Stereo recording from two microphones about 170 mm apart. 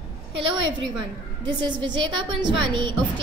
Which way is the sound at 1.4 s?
30° right (ahead or behind).